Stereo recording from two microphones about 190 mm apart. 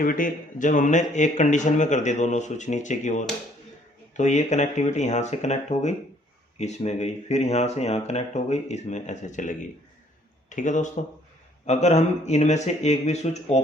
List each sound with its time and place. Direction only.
0.0 s speech: 45° left (ahead or behind)